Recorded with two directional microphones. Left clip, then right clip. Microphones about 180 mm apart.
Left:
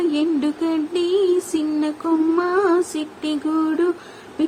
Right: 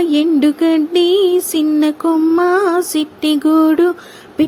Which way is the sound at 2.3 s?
40° right (ahead or behind).